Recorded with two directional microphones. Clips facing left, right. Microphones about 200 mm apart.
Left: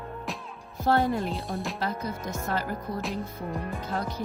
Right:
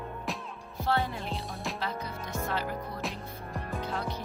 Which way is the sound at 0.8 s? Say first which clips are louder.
Left 6 dB; 45° left (ahead or behind).